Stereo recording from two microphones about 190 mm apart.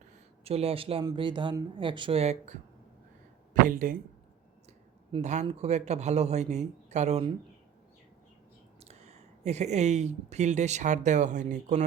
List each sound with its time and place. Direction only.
0.4 s speech: 30° right (ahead or behind)
5.1 s a man's voice: 35° right (ahead or behind)
8.8 s speech: 35° right (ahead or behind)